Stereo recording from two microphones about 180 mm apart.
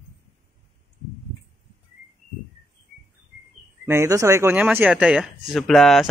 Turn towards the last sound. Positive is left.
turn(degrees=0)  # may be behind; listen again after turning